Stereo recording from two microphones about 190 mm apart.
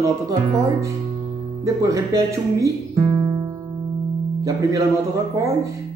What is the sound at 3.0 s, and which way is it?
Music, 25° right (ahead or behind).